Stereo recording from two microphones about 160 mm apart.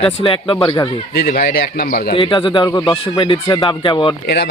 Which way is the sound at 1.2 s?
70° left (ahead or behind).